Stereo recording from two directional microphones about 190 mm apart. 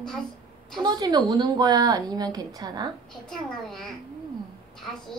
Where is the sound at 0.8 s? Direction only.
20° right (ahead or behind).